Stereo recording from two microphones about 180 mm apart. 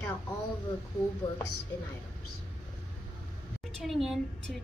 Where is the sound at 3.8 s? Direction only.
Centre (ahead or behind).